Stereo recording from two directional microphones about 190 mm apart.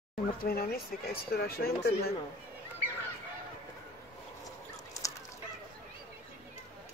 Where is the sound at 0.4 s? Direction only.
50° left (ahead or behind).